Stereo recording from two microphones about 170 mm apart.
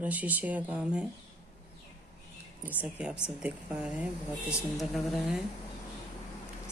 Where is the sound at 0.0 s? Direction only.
10° right (ahead or behind).